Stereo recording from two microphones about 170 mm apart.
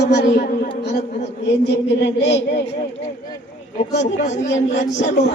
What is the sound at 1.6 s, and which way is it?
Speech, 90° left.